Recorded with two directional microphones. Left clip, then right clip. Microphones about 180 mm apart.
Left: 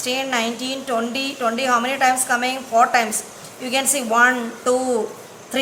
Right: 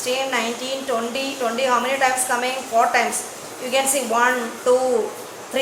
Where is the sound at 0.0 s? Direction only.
15° left (ahead or behind).